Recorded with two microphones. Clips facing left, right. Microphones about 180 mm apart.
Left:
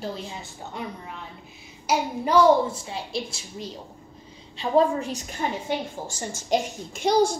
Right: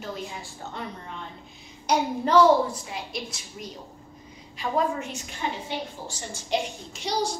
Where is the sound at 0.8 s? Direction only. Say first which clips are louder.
Left 2 dB; 10° left (ahead or behind).